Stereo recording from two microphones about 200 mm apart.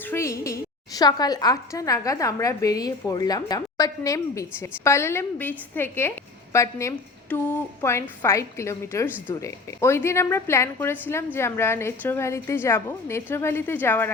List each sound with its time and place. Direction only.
0.0 s a woman's voice: 10° left (ahead or behind)